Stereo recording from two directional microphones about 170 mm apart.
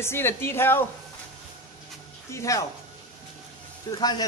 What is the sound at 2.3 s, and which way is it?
Speech, 20° left (ahead or behind).